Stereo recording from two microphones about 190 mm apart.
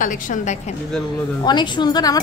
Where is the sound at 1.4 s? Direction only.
25° left (ahead or behind).